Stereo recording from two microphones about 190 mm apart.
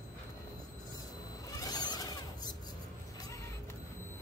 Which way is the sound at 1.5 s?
20° left (ahead or behind).